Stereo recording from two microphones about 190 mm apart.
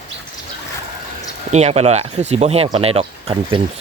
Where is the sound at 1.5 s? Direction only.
35° right (ahead or behind).